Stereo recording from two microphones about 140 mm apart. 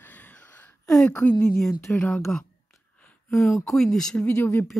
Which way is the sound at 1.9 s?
10° left (ahead or behind).